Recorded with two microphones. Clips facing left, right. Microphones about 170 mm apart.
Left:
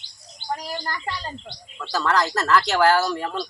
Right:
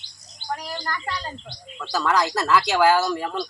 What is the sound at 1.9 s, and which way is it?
Speech, 10° right (ahead or behind).